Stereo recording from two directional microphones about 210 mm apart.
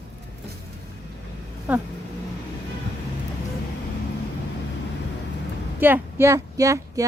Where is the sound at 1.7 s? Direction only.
5° right (ahead or behind).